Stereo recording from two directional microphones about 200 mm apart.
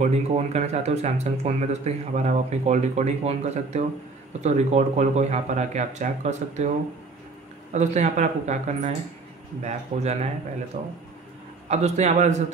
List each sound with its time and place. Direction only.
0.0 s speech: 35° right (ahead or behind)
7.7 s speech: 35° right (ahead or behind)